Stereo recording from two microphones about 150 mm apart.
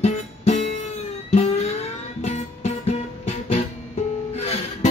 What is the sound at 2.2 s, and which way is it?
Music, 50° left (ahead or behind).